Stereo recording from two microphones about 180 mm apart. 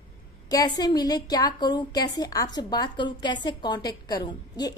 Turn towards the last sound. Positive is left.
turn(degrees=20)  # may be behind; listen again after turning